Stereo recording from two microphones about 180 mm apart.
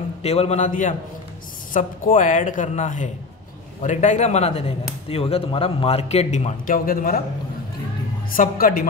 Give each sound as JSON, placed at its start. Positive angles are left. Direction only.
{"t": 0.2, "sound": "a man's voice", "side_deg": 35}
{"t": 8.3, "sound": "speech", "side_deg": 50}